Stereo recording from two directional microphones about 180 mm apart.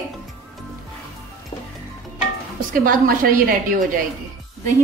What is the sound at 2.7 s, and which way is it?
A woman's voice, 50° right (ahead or behind).